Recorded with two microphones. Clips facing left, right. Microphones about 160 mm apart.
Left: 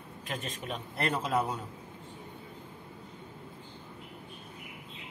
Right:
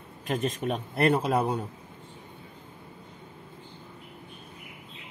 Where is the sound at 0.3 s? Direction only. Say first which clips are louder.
Right 9 dB; 45° right (ahead or behind).